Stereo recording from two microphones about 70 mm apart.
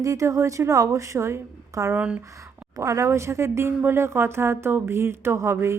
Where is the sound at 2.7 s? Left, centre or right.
Right.